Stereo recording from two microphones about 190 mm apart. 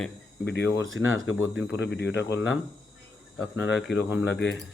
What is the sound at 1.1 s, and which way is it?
Speech, 90° left.